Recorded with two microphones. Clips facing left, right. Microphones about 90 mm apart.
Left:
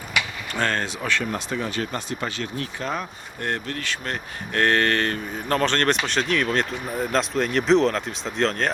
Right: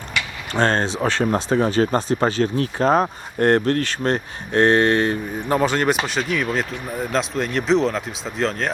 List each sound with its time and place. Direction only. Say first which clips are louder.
0.5 s speech: right 6 dB; 30° right (ahead or behind)
4.5 s speech: right 5 dB; 20° right (ahead or behind); by 8.7 s centre (ahead or behind)